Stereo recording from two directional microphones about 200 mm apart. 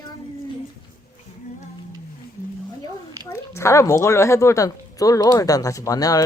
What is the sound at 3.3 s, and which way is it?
A woman's voice, 15° left (ahead or behind).